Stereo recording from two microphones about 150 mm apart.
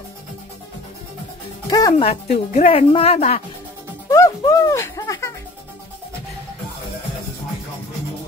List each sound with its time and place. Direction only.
1.7 s speech: 25° left (ahead or behind)
2.0 s speech: 45° left (ahead or behind)
4.1 s music: 20° left (ahead or behind)